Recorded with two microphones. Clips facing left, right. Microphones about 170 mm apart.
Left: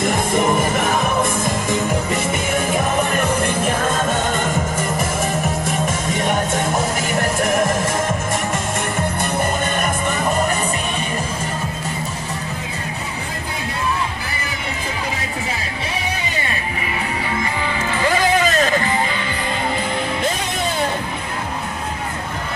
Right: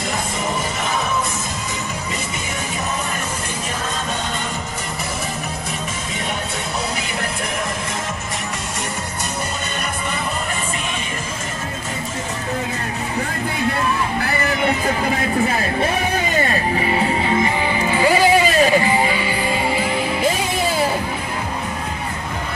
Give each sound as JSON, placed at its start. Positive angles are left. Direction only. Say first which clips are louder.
{"t": 0.4, "sound": "music", "louder": "left 7 dB", "side_deg": 50}
{"t": 17.4, "sound": "music", "louder": "right 4 dB", "side_deg": -15}